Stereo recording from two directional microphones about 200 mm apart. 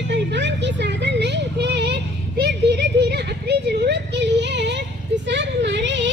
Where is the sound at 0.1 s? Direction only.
60° right (ahead or behind).